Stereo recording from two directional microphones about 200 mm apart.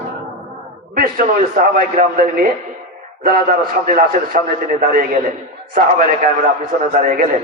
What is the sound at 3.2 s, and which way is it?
A man's voice, 45° right (ahead or behind).